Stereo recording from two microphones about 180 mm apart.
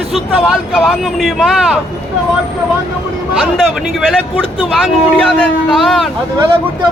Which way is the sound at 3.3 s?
Centre (ahead or behind).